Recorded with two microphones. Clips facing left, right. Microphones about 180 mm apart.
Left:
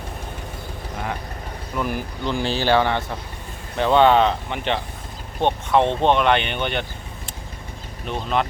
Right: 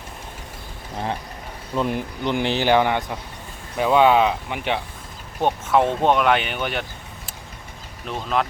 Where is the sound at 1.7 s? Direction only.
25° right (ahead or behind); by 6.8 s 5° right (ahead or behind).